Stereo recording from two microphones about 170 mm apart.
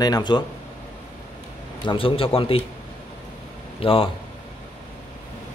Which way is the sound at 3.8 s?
30° left (ahead or behind).